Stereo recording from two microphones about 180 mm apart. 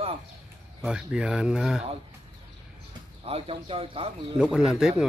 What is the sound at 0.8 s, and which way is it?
Speech, 5° right (ahead or behind).